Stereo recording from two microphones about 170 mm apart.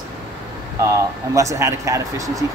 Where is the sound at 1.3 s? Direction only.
20° right (ahead or behind).